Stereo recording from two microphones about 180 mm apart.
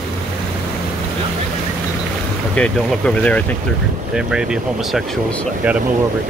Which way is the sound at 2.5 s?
5° left (ahead or behind).